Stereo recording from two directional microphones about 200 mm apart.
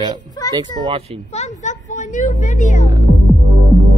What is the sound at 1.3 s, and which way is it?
A woman's voice, 35° left (ahead or behind).